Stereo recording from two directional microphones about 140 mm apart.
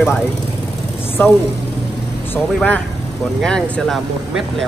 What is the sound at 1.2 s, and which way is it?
Speech, 10° left (ahead or behind).